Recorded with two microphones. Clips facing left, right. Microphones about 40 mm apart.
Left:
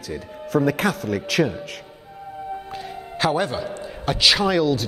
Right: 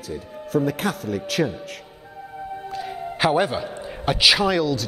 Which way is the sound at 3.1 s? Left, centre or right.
Centre.